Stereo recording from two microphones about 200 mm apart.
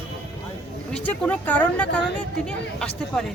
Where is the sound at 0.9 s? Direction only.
5° left (ahead or behind).